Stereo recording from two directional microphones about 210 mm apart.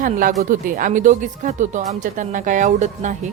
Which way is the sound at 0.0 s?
40° right (ahead or behind).